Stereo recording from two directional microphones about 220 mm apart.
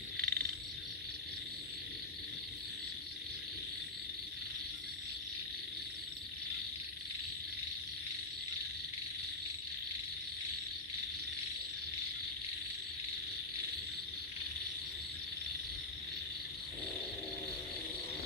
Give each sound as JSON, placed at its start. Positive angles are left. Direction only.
{"t": 0.2, "sound": "frog", "side_deg": -40}